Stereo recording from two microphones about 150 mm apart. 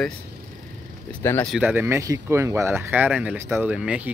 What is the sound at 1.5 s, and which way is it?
Speech, 10° right (ahead or behind).